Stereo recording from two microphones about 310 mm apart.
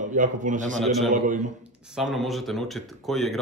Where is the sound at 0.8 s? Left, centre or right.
Centre.